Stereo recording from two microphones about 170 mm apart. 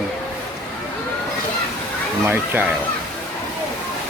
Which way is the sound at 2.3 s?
10° right (ahead or behind).